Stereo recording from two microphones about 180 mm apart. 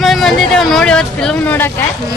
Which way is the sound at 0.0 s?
Centre (ahead or behind).